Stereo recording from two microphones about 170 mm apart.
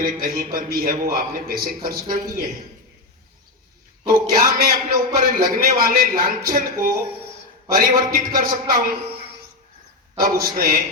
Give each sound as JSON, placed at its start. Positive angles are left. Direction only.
{"t": 0.0, "sound": "a man's voice", "side_deg": -60}
{"t": 4.0, "sound": "a man's voice", "side_deg": -60}
{"t": 10.2, "sound": "a man's voice", "side_deg": -60}